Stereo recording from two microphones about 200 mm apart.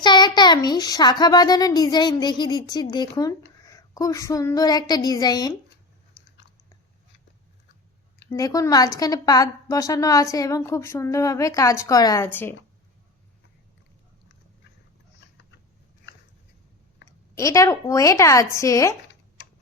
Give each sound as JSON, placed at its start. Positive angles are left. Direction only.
{"t": 0.0, "sound": "a child's voice", "side_deg": 20}
{"t": 8.3, "sound": "a woman's voice", "side_deg": 15}
{"t": 17.1, "sound": "a woman's voice", "side_deg": 15}